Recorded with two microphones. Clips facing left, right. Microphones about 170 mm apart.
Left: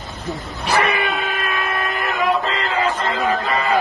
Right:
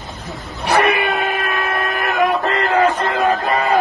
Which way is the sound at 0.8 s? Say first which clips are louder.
Right 4 dB; 60° right (ahead or behind).